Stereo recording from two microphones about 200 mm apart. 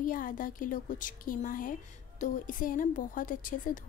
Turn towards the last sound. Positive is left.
turn(degrees=40)  # may be behind; listen again after turning